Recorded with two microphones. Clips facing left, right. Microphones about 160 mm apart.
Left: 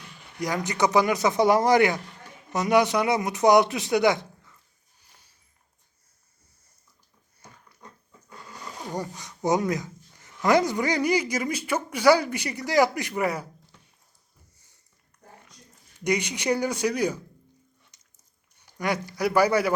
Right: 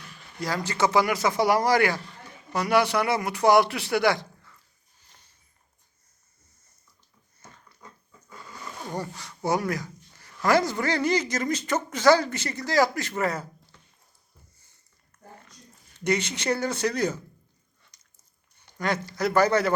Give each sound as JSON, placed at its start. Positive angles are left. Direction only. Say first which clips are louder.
{"t": 0.0, "sound": "speech", "louder": "left 2 dB", "side_deg": 15}
{"t": 5.0, "sound": "a sound", "louder": "even", "side_deg": 10}
{"t": 7.4, "sound": "dog", "louder": "even", "side_deg": 15}
{"t": 8.9, "sound": "speech", "louder": "left 1 dB", "side_deg": 15}
{"t": 16.0, "sound": "speech", "louder": "left 1 dB", "side_deg": 15}
{"t": 18.6, "sound": "speech", "louder": "even", "side_deg": 15}